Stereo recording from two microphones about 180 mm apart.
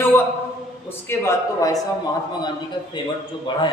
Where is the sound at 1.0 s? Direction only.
15° left (ahead or behind).